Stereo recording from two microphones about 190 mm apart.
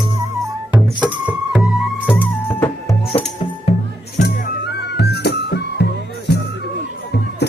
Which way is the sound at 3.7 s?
45° left (ahead or behind).